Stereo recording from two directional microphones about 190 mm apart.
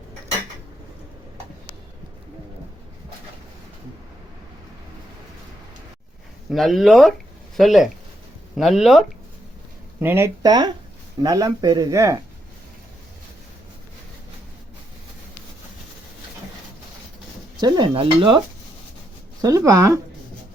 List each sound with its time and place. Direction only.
6.5 s speech: centre (ahead or behind); by 12.2 s 15° right (ahead or behind)
17.6 s dishes: 20° right (ahead or behind)
19.4 s speech: 20° right (ahead or behind)